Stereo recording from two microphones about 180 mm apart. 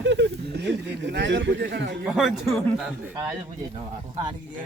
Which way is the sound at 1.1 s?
90° right.